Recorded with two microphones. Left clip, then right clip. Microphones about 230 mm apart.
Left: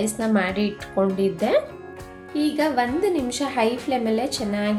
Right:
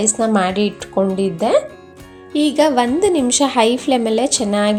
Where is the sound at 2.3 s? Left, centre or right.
Right.